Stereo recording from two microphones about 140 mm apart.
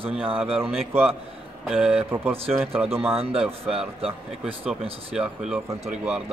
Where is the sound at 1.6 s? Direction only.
5° right (ahead or behind).